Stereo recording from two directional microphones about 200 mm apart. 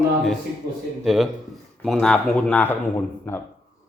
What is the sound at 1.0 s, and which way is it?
Speech, centre (ahead or behind).